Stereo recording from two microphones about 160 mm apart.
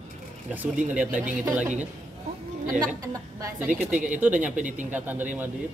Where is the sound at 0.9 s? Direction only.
10° right (ahead or behind).